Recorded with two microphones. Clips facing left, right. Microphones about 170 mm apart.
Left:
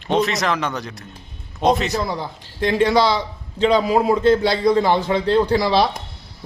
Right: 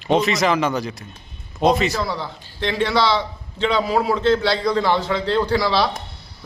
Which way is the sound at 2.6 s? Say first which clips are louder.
Left 3 dB; 45° left (ahead or behind).